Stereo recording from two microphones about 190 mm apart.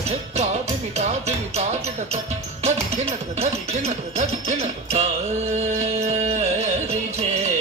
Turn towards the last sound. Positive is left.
turn(degrees=-35)  # may be behind; listen again after turning